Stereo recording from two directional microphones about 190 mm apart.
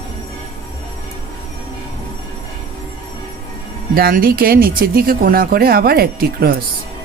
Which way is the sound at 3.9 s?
50° right (ahead or behind).